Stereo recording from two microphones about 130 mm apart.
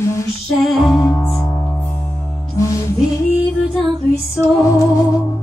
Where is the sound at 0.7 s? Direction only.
Centre (ahead or behind).